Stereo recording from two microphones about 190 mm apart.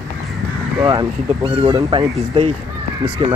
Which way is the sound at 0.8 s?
20° right (ahead or behind).